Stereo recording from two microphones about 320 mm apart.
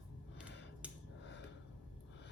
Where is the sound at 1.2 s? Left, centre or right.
Left.